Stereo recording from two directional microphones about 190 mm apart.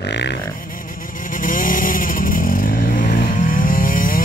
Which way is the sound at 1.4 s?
45° left (ahead or behind).